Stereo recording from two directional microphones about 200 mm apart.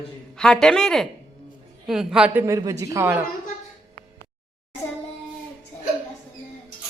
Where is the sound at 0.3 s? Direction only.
5° left (ahead or behind).